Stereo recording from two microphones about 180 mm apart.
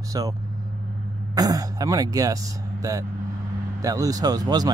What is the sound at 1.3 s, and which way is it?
Speech, 20° right (ahead or behind).